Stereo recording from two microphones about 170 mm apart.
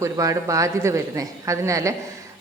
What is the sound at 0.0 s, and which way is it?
Speech, 20° right (ahead or behind).